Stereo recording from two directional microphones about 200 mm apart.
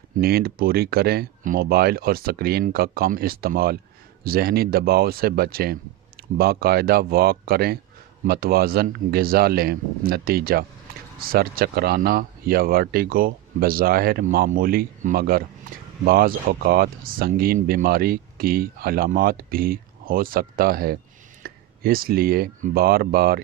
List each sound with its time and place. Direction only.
0.2 s speech: 50° right (ahead or behind)